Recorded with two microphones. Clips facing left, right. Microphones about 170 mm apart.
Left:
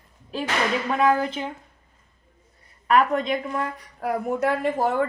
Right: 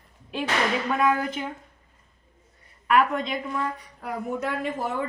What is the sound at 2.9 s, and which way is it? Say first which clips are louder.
Speech: left 2 dB; 40° left (ahead or behind).